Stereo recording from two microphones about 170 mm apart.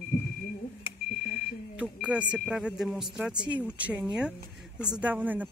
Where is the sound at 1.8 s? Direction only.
5° right (ahead or behind).